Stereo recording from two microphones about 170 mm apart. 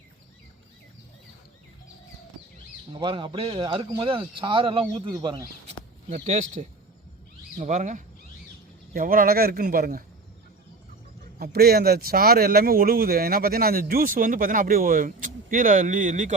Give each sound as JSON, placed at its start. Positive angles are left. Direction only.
{"t": 2.9, "sound": "speech", "side_deg": -30}
{"t": 5.6, "sound": "speech", "side_deg": -40}
{"t": 8.9, "sound": "speech", "side_deg": -60}
{"t": 11.3, "sound": "speech", "side_deg": -65}